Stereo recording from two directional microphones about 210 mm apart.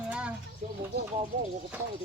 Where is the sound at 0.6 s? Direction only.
35° right (ahead or behind).